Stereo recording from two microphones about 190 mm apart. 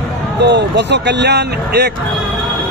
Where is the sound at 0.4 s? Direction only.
65° right (ahead or behind).